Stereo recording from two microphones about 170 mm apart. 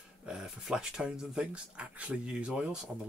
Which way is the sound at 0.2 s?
5° right (ahead or behind).